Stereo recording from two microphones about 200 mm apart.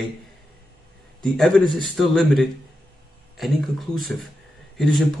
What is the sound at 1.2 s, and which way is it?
Speech, 5° left (ahead or behind).